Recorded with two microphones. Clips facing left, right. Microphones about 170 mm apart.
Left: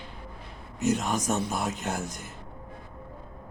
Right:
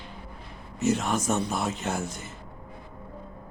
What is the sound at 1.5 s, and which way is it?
Speech, centre (ahead or behind).